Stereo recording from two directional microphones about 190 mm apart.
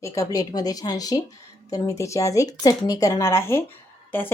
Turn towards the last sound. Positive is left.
turn(degrees=10)  # may be behind; listen again after turning